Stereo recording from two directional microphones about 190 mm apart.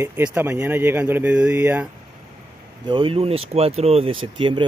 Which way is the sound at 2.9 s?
25° right (ahead or behind).